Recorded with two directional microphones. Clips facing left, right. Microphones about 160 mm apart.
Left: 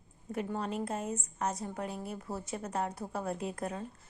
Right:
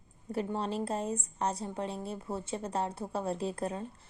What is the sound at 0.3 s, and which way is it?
A woman's voice, 30° right (ahead or behind).